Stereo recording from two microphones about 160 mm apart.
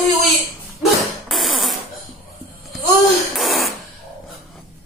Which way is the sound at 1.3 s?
Centre (ahead or behind).